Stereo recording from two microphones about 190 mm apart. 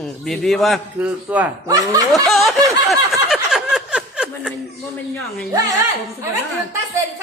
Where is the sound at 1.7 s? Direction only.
20° right (ahead or behind).